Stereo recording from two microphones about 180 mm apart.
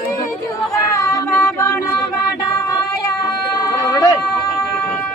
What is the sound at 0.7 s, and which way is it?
Child singing, 20° left (ahead or behind).